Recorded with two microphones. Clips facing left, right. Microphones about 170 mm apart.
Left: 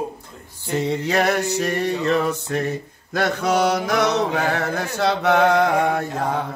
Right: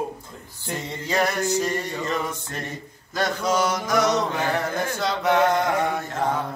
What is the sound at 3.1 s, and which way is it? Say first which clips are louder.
Mantra: left 3 dB; 65° left (ahead or behind).